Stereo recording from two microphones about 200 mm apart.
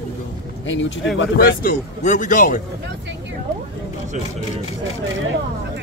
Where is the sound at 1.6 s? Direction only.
40° left (ahead or behind).